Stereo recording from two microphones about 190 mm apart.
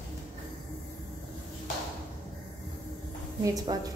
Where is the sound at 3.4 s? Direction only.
20° right (ahead or behind).